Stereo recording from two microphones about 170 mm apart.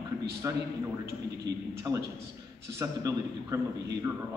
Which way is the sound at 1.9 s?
20° right (ahead or behind).